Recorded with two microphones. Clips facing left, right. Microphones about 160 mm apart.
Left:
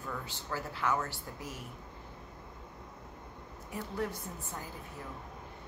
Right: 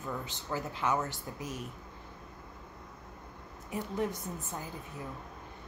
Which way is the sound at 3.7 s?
20° right (ahead or behind).